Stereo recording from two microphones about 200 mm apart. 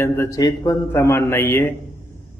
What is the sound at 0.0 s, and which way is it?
A man's voice, 15° left (ahead or behind).